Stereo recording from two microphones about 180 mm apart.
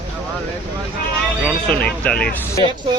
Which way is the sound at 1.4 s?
5° left (ahead or behind).